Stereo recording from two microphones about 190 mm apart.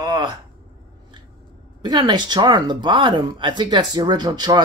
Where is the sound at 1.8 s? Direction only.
20° right (ahead or behind).